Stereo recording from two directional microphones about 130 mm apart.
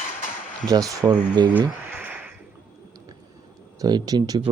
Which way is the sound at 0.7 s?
30° right (ahead or behind).